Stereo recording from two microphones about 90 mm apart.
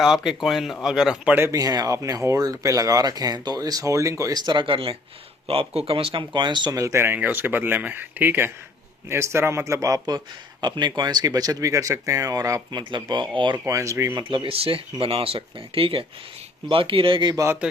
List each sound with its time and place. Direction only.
0.0 s speech: 5° right (ahead or behind)
1.5 s speech: 45° right (ahead or behind)
4.4 s speech: 60° right (ahead or behind)
6.7 s speech: 35° right (ahead or behind)
10.6 s speech: 55° right (ahead or behind)
12.9 s speech: 60° right (ahead or behind)
13.7 s speech: 35° right (ahead or behind)
14.2 s speech: 65° right (ahead or behind)
17.3 s speech: 30° right (ahead or behind)